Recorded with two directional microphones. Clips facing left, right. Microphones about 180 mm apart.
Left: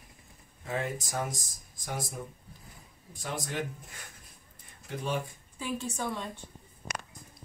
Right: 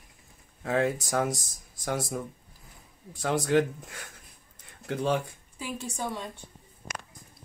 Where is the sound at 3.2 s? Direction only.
90° right.